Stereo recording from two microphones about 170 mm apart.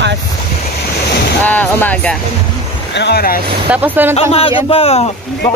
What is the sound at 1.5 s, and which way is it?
Speech, 10° left (ahead or behind).